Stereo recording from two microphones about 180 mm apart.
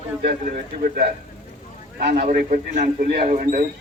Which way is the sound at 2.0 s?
60° right (ahead or behind).